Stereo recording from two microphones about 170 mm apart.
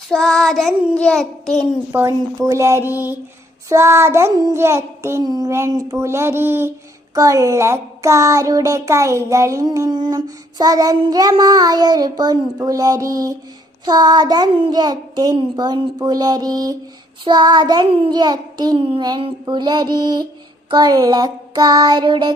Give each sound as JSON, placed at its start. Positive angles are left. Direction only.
{"t": 0.1, "sound": "child singing", "side_deg": 5}
{"t": 1.9, "sound": "child singing", "side_deg": -15}
{"t": 5.9, "sound": "speech", "side_deg": -15}